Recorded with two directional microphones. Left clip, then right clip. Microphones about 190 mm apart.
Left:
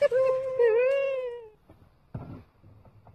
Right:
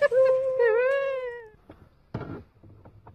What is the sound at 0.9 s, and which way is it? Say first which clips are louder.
Cat: even; 5° left (ahead or behind).